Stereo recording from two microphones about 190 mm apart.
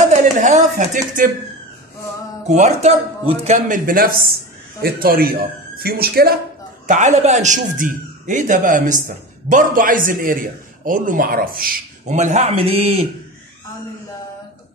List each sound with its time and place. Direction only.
0.1 s speech: 40° right (ahead or behind)
2.4 s a man's voice: 40° right (ahead or behind)
6.9 s a man's voice: 40° right (ahead or behind)